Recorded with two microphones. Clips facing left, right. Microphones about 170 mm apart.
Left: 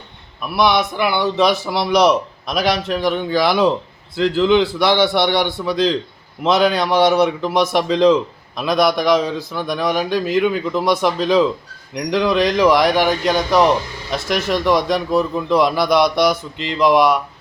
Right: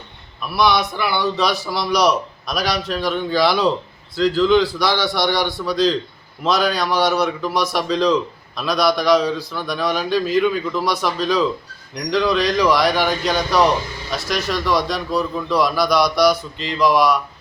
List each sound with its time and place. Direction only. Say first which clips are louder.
0.4 s a man's voice: left 1 dB; 20° left (ahead or behind)